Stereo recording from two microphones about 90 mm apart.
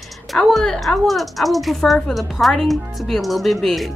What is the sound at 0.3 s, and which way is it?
Speech, centre (ahead or behind).